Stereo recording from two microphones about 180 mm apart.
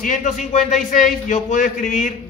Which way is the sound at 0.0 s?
45° left (ahead or behind).